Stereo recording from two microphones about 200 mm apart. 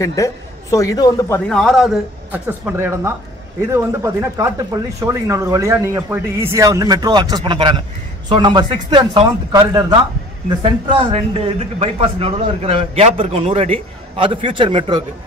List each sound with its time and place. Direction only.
0.0 s a man's voice: 15° left (ahead or behind)
1.5 s a man's voice: centre (ahead or behind); by 9.9 s 20° right (ahead or behind)
10.6 s a man's voice: 30° right (ahead or behind)